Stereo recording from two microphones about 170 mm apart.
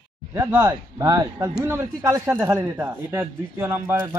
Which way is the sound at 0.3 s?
15° right (ahead or behind).